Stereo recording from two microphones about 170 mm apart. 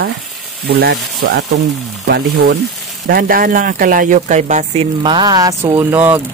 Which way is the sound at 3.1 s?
55° right (ahead or behind).